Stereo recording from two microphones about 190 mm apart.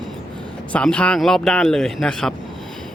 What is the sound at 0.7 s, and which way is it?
Speech, 5° left (ahead or behind).